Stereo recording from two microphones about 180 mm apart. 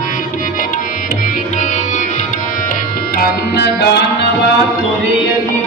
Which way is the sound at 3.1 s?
65° left (ahead or behind).